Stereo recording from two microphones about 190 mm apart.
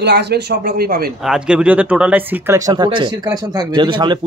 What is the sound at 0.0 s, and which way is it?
Speech, 60° right (ahead or behind).